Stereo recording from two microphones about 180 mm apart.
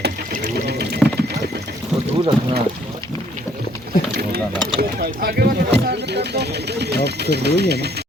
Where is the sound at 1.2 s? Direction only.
65° right (ahead or behind).